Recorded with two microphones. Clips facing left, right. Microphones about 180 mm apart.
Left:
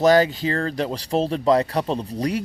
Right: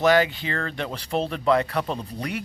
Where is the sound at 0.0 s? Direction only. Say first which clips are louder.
Left 3 dB; 40° left (ahead or behind).